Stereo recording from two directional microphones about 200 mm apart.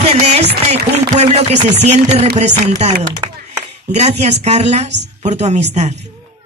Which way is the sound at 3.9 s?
35° right (ahead or behind).